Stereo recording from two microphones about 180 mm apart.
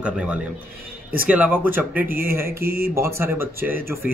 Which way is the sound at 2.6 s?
55° right (ahead or behind).